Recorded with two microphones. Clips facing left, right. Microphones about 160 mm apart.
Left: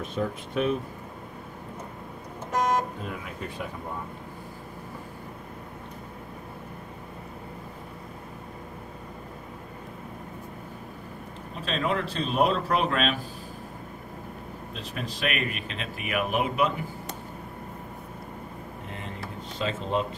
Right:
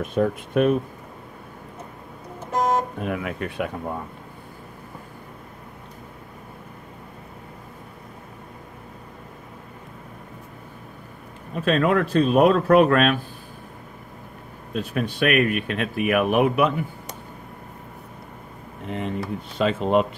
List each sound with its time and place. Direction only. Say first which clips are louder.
0.0 s speech: right 7 dB; 55° right (ahead or behind)
3.0 s speech: right 8 dB; 70° right (ahead or behind)
11.5 s speech: right 8 dB; 55° right (ahead or behind)
14.7 s speech: right 11 dB; 55° right (ahead or behind)
18.9 s a sound: right 13 dB; 65° right (ahead or behind)